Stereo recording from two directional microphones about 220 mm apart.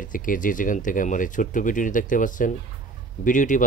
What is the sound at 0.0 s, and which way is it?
Speech, 40° left (ahead or behind).